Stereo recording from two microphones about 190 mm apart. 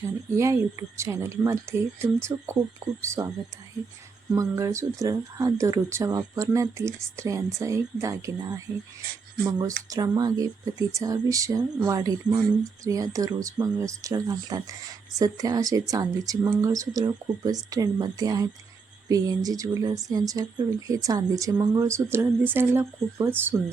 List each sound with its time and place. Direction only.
0.3 s speech: 15° right (ahead or behind)
4.4 s speech: 15° right (ahead or behind)